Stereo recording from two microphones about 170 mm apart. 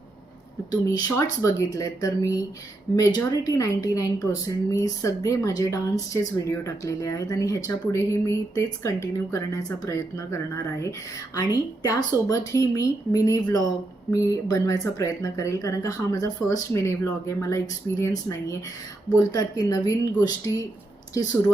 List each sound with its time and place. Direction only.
0.7 s speech: 20° left (ahead or behind)
19.3 s speech: 20° left (ahead or behind)